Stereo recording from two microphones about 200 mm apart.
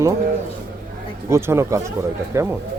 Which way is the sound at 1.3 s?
15° right (ahead or behind).